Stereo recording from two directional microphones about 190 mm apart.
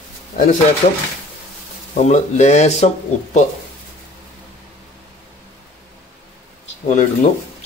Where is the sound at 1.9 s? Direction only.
40° left (ahead or behind).